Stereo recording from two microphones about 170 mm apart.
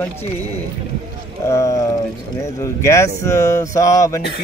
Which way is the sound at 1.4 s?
20° left (ahead or behind).